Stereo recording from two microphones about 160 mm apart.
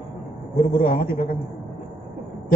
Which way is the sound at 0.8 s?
65° left (ahead or behind).